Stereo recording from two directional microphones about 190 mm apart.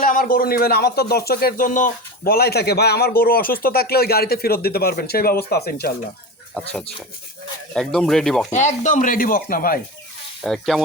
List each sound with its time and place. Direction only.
0.0 s speech: 45° left (ahead or behind)
7.7 s speech: 5° left (ahead or behind)
8.5 s speech: 40° left (ahead or behind)
10.4 s speech: centre (ahead or behind)